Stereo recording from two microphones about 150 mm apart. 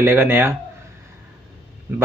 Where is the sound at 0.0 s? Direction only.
15° right (ahead or behind).